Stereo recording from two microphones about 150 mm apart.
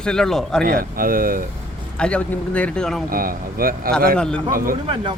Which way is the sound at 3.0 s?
70° right (ahead or behind).